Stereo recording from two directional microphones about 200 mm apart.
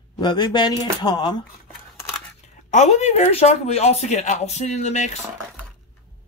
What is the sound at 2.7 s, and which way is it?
Speech, 35° left (ahead or behind).